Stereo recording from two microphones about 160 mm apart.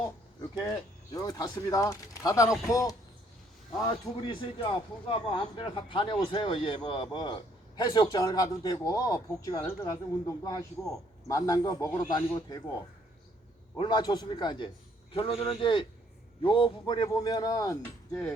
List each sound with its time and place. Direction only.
1.1 s speech: 25° left (ahead or behind)
13.7 s speech: 30° left (ahead or behind)